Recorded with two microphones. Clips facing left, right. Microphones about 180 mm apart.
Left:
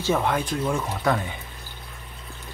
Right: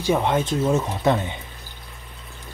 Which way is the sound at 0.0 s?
20° right (ahead or behind).